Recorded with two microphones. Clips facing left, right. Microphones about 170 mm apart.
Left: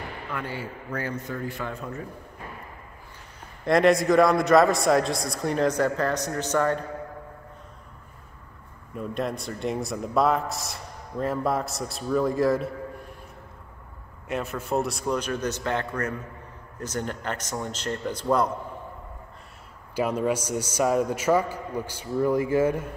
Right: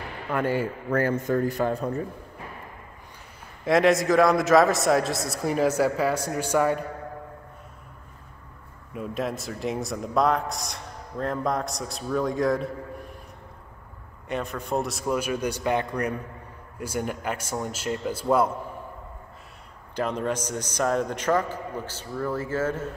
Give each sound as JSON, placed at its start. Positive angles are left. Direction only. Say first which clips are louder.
{"t": 0.3, "sound": "a man's voice", "louder": "right 10 dB", "side_deg": -50}
{"t": 3.6, "sound": "a man's voice", "louder": "left 1 dB", "side_deg": 0}
{"t": 8.9, "sound": "a man's voice", "louder": "even", "side_deg": 0}
{"t": 14.2, "sound": "a man's voice", "louder": "even", "side_deg": 0}
{"t": 20.0, "sound": "a man's voice", "louder": "left 2 dB", "side_deg": 10}